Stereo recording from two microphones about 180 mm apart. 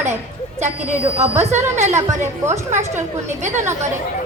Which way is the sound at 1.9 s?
15° right (ahead or behind).